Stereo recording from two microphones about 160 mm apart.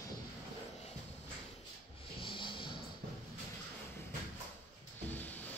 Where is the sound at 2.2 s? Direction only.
30° left (ahead or behind).